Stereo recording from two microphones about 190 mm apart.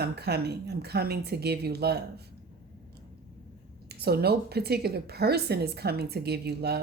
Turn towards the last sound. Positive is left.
turn(degrees=-60)  # may be behind; listen again after turning